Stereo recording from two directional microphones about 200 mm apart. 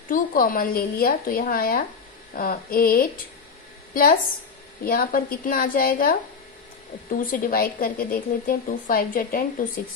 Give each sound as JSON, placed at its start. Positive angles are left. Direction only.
{"t": 0.1, "sound": "a woman's voice", "side_deg": 45}